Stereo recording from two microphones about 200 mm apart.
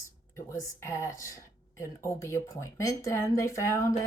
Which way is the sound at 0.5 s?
15° left (ahead or behind).